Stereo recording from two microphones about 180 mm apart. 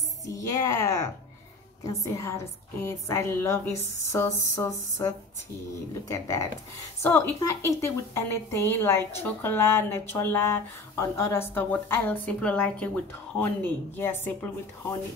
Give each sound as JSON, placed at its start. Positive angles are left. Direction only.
{"t": 0.2, "sound": "a woman's voice", "side_deg": 20}